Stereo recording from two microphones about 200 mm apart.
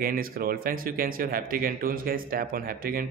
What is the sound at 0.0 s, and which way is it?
Speech, 45° right (ahead or behind).